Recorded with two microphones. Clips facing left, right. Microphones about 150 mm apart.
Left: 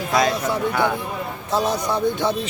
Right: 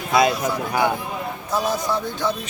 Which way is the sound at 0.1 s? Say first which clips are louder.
Right 2 dB; 5° right (ahead or behind).